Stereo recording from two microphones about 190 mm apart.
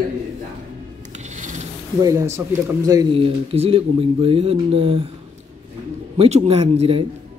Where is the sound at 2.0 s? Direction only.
20° right (ahead or behind).